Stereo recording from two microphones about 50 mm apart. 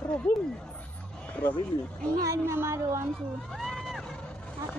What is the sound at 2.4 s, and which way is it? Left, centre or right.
Speech, right.